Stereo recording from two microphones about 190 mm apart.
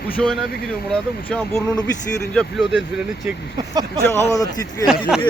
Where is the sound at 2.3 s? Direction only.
Centre (ahead or behind).